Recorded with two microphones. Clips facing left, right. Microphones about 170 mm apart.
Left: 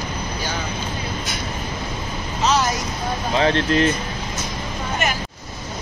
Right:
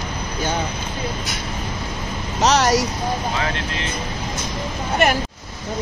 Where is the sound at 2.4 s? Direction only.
85° right.